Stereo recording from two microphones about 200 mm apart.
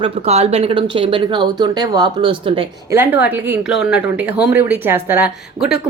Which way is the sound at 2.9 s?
10° right (ahead or behind).